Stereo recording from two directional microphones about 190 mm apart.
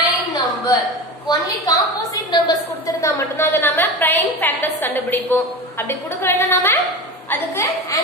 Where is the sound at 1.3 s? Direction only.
20° left (ahead or behind).